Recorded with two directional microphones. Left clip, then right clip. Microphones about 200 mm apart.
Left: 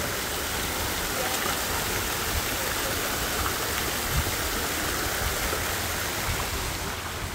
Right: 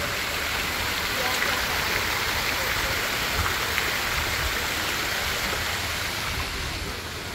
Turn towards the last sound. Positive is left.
turn(degrees=50)  # may be behind; listen again after turning